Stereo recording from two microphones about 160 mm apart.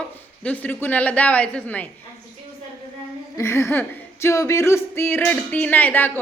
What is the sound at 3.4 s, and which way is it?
Speech, 15° left (ahead or behind).